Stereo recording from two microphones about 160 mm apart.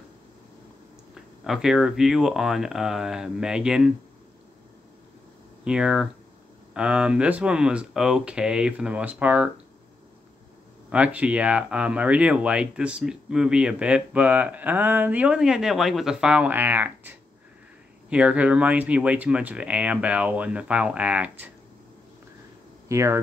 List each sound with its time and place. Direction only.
1.4 s speech: centre (ahead or behind)
5.6 s speech: 5° right (ahead or behind)
10.9 s speech: 10° right (ahead or behind)
18.1 s speech: 10° right (ahead or behind)
22.8 s speech: 15° right (ahead or behind)